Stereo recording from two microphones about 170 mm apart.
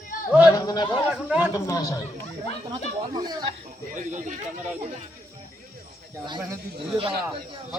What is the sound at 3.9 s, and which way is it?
Speech, 50° right (ahead or behind).